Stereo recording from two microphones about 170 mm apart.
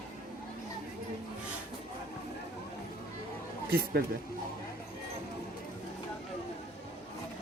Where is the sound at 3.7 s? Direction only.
65° right (ahead or behind).